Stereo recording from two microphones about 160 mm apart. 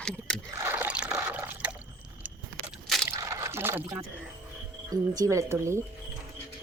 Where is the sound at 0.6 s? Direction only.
10° right (ahead or behind).